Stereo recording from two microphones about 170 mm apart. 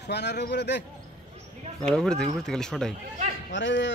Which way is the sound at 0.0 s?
80° left.